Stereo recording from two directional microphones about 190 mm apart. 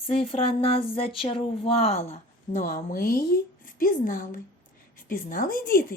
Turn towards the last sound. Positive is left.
turn(degrees=50)  # may be behind; listen again after turning